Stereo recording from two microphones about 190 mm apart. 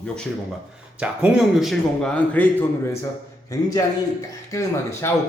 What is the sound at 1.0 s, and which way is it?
A man's voice, 5° right (ahead or behind).